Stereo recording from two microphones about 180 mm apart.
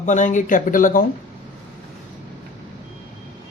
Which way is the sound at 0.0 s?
45° left (ahead or behind).